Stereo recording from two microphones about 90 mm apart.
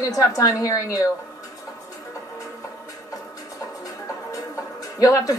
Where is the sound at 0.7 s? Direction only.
40° left (ahead or behind).